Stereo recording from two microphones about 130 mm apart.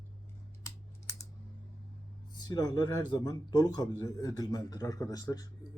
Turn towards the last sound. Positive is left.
turn(degrees=30)  # may be behind; listen again after turning